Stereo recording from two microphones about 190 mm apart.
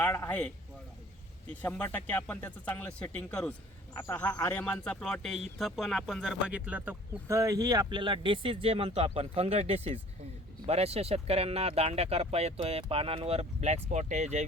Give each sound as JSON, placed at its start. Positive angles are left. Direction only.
{"t": 0.0, "sound": "speech", "side_deg": 10}
{"t": 1.6, "sound": "speech", "side_deg": 10}